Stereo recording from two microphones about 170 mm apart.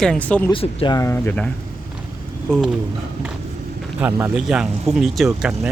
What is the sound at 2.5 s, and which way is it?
Speech, 5° left (ahead or behind).